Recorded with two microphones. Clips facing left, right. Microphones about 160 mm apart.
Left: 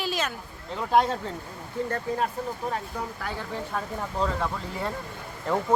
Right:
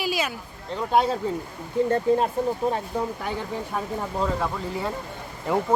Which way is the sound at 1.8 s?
25° right (ahead or behind).